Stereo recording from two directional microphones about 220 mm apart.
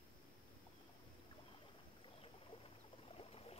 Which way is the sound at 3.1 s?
25° left (ahead or behind).